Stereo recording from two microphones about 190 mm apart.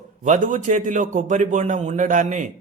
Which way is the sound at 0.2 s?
40° right (ahead or behind).